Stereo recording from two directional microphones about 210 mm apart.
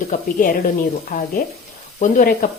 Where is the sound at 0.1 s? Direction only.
40° left (ahead or behind).